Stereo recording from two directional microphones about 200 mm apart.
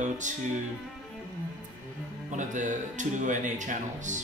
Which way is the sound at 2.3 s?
40° right (ahead or behind).